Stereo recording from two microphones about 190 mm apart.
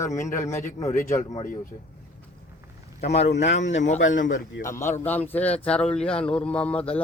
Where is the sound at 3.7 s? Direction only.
35° left (ahead or behind).